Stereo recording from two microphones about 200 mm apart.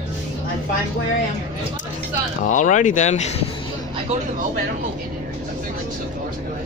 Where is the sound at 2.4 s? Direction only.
40° left (ahead or behind).